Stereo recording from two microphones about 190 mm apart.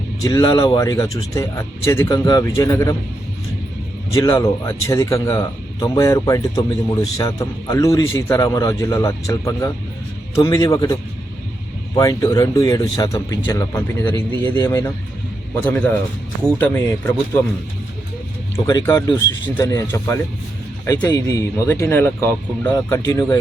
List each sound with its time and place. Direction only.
0.2 s speech: 15° left (ahead or behind)
4.1 s speech: 15° left (ahead or behind)
11.9 s speech: 15° left (ahead or behind)
16.6 s speech: 10° left (ahead or behind)
18.5 s speech: 15° left (ahead or behind)